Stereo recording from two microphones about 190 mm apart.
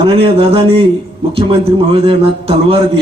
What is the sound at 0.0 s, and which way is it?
A man's voice, 30° right (ahead or behind).